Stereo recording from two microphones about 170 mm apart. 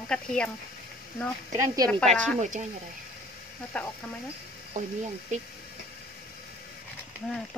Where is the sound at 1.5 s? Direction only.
20° right (ahead or behind).